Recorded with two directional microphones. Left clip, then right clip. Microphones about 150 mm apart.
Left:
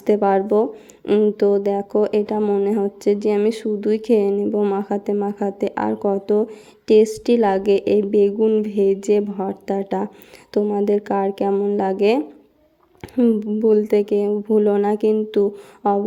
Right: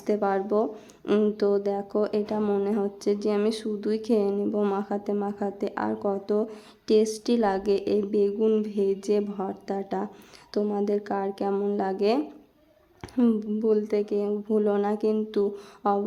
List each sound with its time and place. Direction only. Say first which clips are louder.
0.0 s speech: left 9 dB; 25° left (ahead or behind)
1.0 s speech: left 7 dB; 5° left (ahead or behind)
1.4 s speech: left 7 dB; 20° left (ahead or behind)
2.4 s speech: left 7 dB; 10° left (ahead or behind)
4.4 s speech: left 7 dB; 10° left (ahead or behind)
4.8 s speech: left 7 dB; 25° left (ahead or behind)
8.4 s speech: left 6 dB; 10° left (ahead or behind)
8.6 s speech: left 8 dB; 25° left (ahead or behind)
11.5 s speech: left 7 dB; 10° left (ahead or behind)
11.8 s speech: left 7 dB; 25° left (ahead or behind)
13.0 s speech: left 7 dB; 10° left (ahead or behind)
13.6 s speech: left 9 dB; 25° left (ahead or behind)